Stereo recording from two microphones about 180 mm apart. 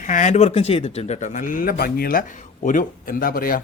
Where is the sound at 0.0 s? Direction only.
45° left (ahead or behind).